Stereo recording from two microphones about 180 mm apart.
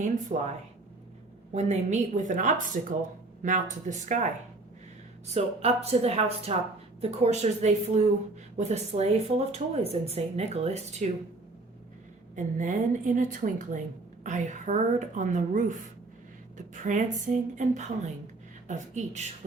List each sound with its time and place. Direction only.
0.3 s a woman's voice: 45° right (ahead or behind)
1.5 s a woman's voice: 40° right (ahead or behind)
12.4 s a woman's voice: 45° right (ahead or behind)